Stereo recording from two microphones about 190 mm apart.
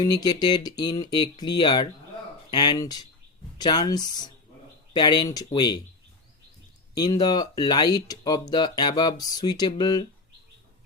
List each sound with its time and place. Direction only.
0.0 s speech: 20° left (ahead or behind)
6.9 s speech: 20° left (ahead or behind)